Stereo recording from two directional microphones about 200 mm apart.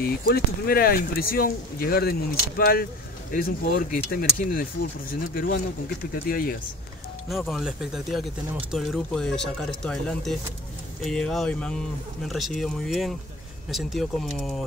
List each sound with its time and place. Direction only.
0.0 s speech: 50° left (ahead or behind)
7.2 s speech: centre (ahead or behind)